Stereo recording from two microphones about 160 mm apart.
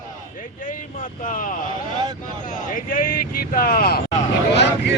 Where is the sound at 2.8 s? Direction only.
60° left (ahead or behind).